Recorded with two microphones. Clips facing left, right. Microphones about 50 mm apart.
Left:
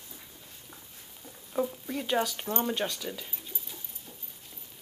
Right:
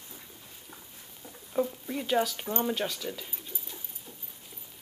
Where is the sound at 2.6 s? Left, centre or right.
Centre.